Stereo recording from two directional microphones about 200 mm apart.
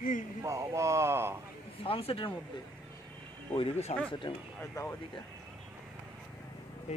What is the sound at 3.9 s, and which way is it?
Speech, 35° left (ahead or behind).